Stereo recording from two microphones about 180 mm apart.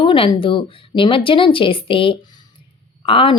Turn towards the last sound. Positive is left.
turn(degrees=30)  # may be behind; listen again after turning